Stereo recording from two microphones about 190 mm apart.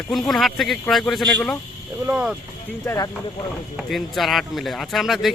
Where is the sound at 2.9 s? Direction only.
20° left (ahead or behind).